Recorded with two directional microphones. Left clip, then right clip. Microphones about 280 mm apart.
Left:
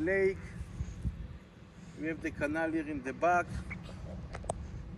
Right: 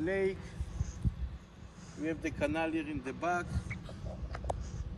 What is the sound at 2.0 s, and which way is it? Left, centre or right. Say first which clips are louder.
Speech: right 1 dB; right.